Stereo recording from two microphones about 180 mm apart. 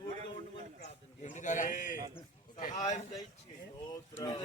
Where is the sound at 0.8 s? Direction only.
40° left (ahead or behind).